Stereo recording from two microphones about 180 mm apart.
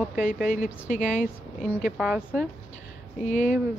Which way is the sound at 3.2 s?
45° left (ahead or behind).